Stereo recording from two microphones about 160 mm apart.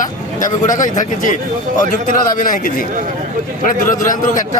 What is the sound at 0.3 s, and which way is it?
A man's voice, 55° left (ahead or behind).